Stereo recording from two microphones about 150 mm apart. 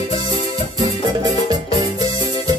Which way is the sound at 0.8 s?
25° right (ahead or behind).